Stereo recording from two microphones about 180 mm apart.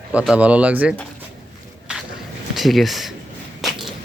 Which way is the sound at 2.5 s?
Centre (ahead or behind).